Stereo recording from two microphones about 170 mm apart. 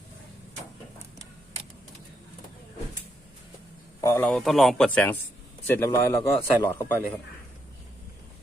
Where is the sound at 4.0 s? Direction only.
15° left (ahead or behind).